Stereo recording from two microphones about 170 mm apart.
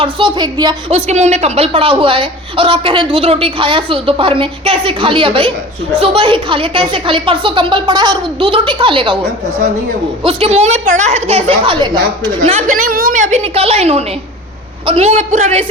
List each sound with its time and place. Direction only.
0.0 s a woman's voice: 30° right (ahead or behind)
0.9 s a woman's voice: 40° right (ahead or behind)
10.2 s a woman's voice: 35° right (ahead or behind)
12.4 s a woman's voice: 40° right (ahead or behind)
12.7 s a woman's voice: 55° right (ahead or behind)